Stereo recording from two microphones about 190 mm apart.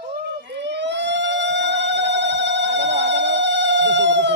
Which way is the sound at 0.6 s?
65° right (ahead or behind).